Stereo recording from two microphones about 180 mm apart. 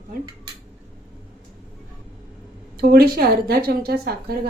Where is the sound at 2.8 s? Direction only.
55° right (ahead or behind).